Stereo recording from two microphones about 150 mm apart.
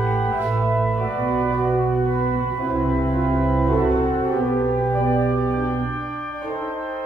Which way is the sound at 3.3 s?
Centre (ahead or behind).